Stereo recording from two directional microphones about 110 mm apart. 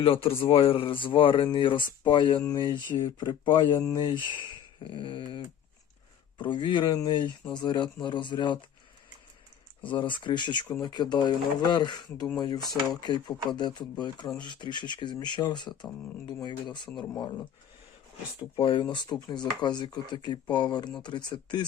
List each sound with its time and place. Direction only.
0.0 s speech: 55° left (ahead or behind)
3.8 s speech: 30° left (ahead or behind)
4.1 s speech: 45° left (ahead or behind)
6.4 s speech: 45° left (ahead or behind)
9.9 s speech: 45° left (ahead or behind)
18.5 s speech: 55° left (ahead or behind)